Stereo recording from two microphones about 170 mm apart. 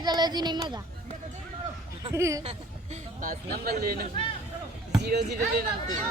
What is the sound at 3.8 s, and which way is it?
Speech, 60° right (ahead or behind).